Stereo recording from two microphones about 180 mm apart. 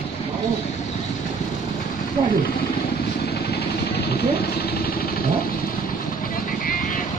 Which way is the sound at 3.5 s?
60° left (ahead or behind).